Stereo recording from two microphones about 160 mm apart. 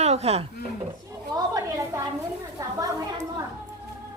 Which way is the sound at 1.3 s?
25° right (ahead or behind).